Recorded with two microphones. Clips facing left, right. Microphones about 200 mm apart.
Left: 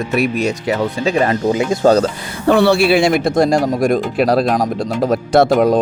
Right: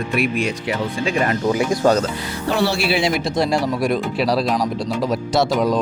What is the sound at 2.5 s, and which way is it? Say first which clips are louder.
A man's voice: left 8 dB; 60° left (ahead or behind).